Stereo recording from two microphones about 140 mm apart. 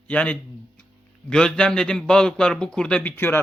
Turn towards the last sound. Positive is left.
turn(degrees=15)  # may be behind; listen again after turning